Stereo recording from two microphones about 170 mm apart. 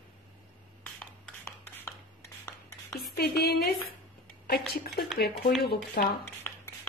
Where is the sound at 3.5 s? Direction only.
65° left (ahead or behind).